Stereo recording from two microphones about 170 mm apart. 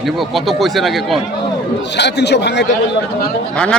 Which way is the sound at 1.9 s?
85° left.